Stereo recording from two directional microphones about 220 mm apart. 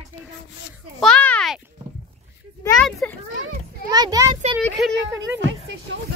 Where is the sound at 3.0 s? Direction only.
5° left (ahead or behind).